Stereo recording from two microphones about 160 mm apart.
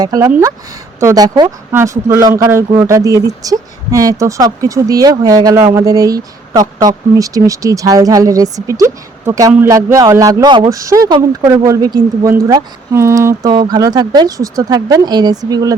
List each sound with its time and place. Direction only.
0.0 s speech: 20° right (ahead or behind)
0.3 s speech: 10° right (ahead or behind)
0.9 s speech: 20° right (ahead or behind)